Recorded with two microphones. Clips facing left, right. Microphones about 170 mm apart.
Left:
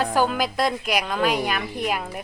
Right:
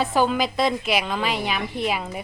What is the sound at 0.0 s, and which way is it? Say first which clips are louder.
A woman's voice: right 1 dB; centre (ahead or behind).